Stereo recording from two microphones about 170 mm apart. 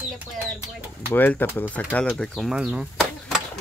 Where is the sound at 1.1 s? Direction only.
10° left (ahead or behind).